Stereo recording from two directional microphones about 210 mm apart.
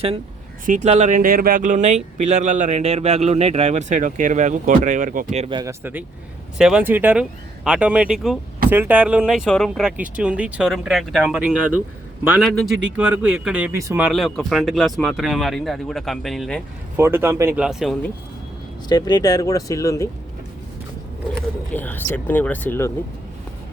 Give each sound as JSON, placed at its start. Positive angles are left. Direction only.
{"t": 0.6, "sound": "a man's voice", "side_deg": -35}
{"t": 5.8, "sound": "speech", "side_deg": -10}
{"t": 17.0, "sound": "speech", "side_deg": -10}
{"t": 18.9, "sound": "speech", "side_deg": 20}
{"t": 21.7, "sound": "speech", "side_deg": 10}